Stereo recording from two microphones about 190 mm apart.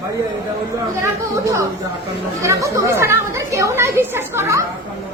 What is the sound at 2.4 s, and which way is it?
Speech, 15° right (ahead or behind).